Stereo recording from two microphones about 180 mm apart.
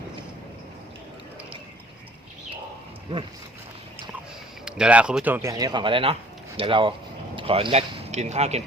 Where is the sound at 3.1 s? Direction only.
30° right (ahead or behind).